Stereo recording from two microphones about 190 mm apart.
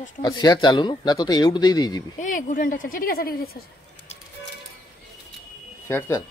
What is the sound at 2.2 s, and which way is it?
A woman's voice, 45° left (ahead or behind).